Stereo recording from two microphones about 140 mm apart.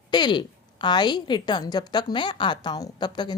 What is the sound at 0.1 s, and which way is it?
A woman's voice, 30° left (ahead or behind).